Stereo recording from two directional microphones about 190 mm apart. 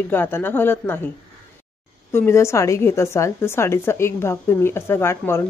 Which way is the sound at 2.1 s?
15° left (ahead or behind).